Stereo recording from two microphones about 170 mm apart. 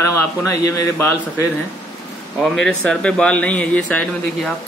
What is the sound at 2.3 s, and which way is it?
A man's voice, 5° left (ahead or behind).